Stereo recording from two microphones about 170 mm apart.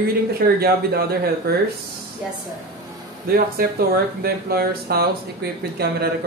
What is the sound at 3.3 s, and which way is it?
Speech, 60° right (ahead or behind).